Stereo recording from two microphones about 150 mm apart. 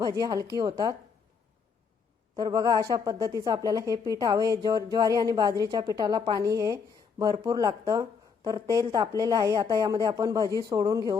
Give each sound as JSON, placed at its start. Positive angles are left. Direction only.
{"t": 0.0, "sound": "a woman's voice", "side_deg": -25}
{"t": 2.3, "sound": "a woman's voice", "side_deg": -25}